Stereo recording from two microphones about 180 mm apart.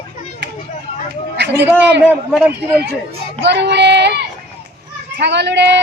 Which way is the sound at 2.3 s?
5° right (ahead or behind).